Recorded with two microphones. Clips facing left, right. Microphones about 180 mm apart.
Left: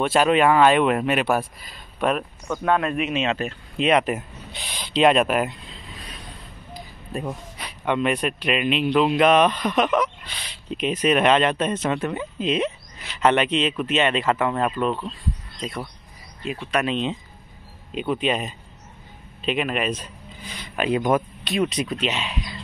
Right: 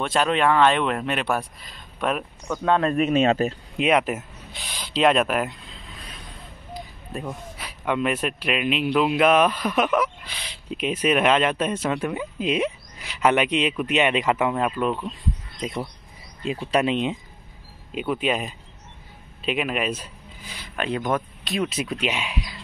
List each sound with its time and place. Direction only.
0.0 s speech: 5° left (ahead or behind)
2.8 s a man's voice: 40° right (ahead or behind)
3.7 s speech: 10° right (ahead or behind)
4.7 s a sound: centre (ahead or behind)
6.7 s speech: centre (ahead or behind)
16.8 s speech: 15° right (ahead or behind)
20.7 s speech: 10° left (ahead or behind); by 22.6 s 10° right (ahead or behind)